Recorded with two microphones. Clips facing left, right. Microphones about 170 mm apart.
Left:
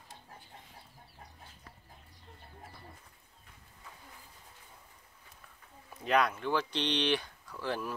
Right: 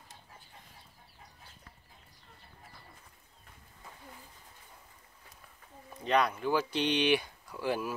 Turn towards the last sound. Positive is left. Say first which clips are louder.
# right 3 dB
turn(degrees=-10)  # may be behind; listen again after turning